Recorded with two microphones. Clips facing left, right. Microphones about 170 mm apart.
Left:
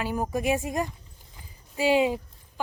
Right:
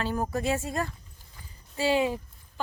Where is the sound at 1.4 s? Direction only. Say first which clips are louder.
Left 2 dB; 15° left (ahead or behind).